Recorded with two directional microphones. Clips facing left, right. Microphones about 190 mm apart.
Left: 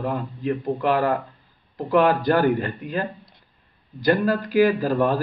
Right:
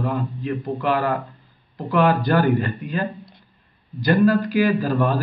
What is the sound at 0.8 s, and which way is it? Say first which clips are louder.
Speech: left 1 dB; 30° left (ahead or behind).